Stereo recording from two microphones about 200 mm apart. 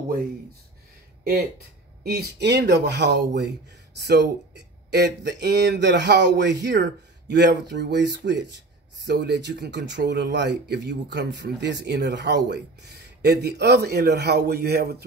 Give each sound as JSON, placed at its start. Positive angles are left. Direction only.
{"t": 2.0, "sound": "a man's voice", "side_deg": -55}